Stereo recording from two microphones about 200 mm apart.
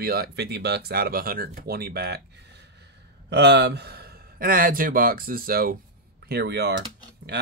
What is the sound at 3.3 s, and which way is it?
A man's voice, 55° right (ahead or behind).